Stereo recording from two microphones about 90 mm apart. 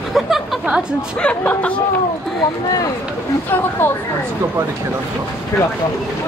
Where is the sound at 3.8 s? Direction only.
25° left (ahead or behind).